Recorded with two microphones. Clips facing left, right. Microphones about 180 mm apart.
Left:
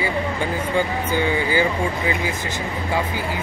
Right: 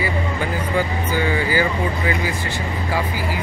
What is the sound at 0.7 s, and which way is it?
Speech, 20° left (ahead or behind).